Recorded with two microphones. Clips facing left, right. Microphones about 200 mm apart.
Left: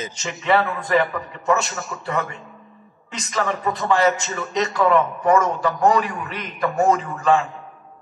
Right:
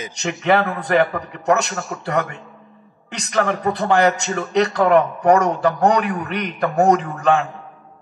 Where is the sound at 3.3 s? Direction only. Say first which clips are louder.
Right 4 dB; 65° right (ahead or behind).